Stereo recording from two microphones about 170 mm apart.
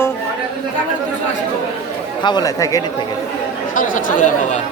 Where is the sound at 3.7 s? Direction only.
50° left (ahead or behind).